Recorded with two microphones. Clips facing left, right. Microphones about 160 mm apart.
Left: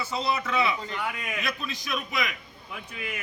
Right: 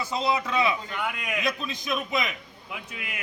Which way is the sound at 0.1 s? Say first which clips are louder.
Right 2 dB; 15° right (ahead or behind).